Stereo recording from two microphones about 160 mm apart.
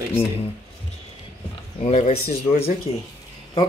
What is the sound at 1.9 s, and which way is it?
Speech, 45° left (ahead or behind).